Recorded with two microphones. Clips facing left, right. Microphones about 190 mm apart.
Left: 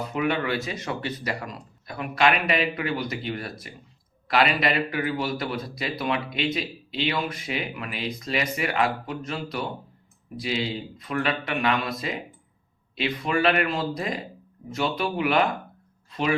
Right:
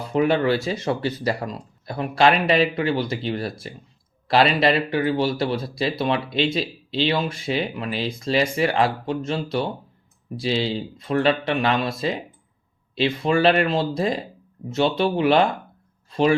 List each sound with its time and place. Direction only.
0.1 s a man's voice: 30° right (ahead or behind)